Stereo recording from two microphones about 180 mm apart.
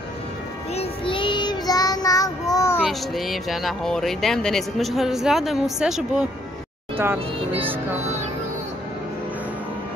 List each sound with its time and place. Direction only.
0.7 s child singing: 30° left (ahead or behind)
2.8 s speech: centre (ahead or behind)
8.0 s music: 40° right (ahead or behind)